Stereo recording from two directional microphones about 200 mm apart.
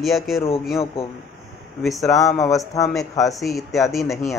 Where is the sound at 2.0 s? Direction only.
15° left (ahead or behind).